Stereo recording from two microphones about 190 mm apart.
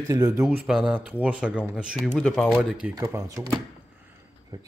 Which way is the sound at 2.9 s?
20° right (ahead or behind).